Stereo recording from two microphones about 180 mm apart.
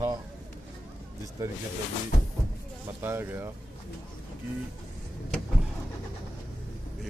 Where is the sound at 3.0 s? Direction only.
10° right (ahead or behind).